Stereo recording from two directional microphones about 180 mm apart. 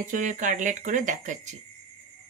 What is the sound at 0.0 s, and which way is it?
Speech, 45° right (ahead or behind).